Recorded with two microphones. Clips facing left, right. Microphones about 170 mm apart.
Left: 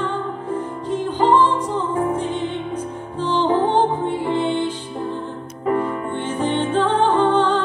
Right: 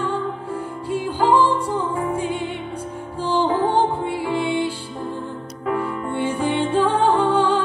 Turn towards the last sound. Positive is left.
turn(degrees=-10)  # may be behind; listen again after turning